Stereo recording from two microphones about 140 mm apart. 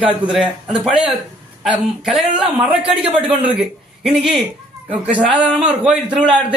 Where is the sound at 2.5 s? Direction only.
40° right (ahead or behind).